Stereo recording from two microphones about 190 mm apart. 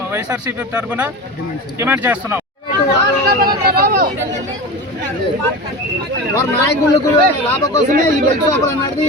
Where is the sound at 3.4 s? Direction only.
50° right (ahead or behind).